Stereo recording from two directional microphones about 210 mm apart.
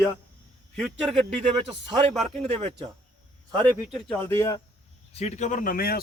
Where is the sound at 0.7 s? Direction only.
Centre (ahead or behind).